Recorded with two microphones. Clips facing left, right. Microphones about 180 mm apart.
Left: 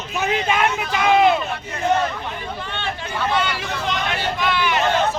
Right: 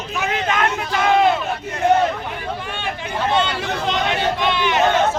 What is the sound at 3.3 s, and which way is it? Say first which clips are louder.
Vehicle: right 3 dB; 25° right (ahead or behind).